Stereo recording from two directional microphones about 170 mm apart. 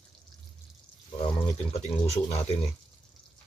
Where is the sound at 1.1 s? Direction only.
30° left (ahead or behind).